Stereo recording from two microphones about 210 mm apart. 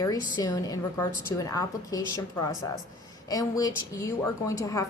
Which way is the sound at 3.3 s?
15° left (ahead or behind).